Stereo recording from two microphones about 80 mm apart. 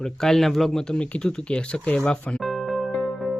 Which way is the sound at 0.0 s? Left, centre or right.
Centre.